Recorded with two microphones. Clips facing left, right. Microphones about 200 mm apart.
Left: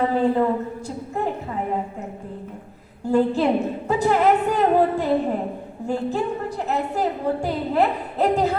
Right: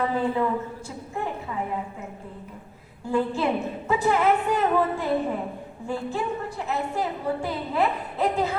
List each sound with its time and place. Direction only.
0.0 s a woman's voice: 40° left (ahead or behind)
3.1 s a woman's voice: 40° left (ahead or behind)